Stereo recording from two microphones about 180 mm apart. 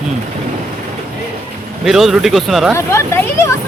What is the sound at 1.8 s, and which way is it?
Speech, centre (ahead or behind).